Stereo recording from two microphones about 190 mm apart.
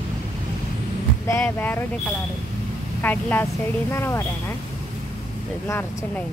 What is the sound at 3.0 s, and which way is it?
Speech, 10° left (ahead or behind).